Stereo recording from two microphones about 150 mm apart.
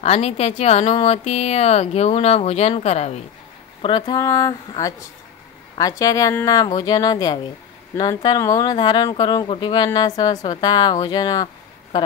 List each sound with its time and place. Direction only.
0.0 s speech: 45° left (ahead or behind)
3.8 s speech: 30° left (ahead or behind)